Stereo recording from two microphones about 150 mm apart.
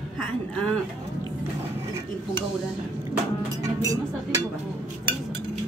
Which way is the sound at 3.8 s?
25° right (ahead or behind).